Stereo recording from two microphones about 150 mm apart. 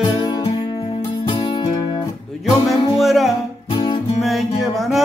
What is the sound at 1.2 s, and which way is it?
Music, 30° left (ahead or behind).